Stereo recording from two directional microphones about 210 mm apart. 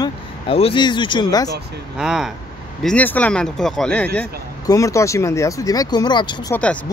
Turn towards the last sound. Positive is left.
turn(degrees=20)  # may be behind; listen again after turning